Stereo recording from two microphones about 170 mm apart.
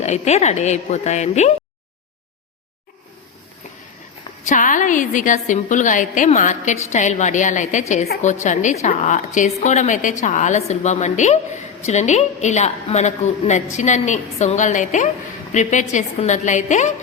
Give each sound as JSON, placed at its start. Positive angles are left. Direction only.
{"t": 0.0, "sound": "a woman's voice", "side_deg": 40}
{"t": 4.4, "sound": "a woman's voice", "side_deg": 50}